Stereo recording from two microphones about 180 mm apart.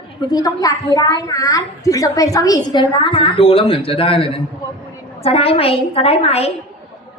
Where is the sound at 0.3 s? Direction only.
20° left (ahead or behind).